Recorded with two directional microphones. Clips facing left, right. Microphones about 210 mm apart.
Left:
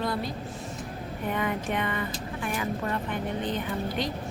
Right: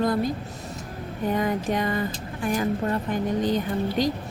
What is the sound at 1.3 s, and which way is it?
Speech, 35° right (ahead or behind).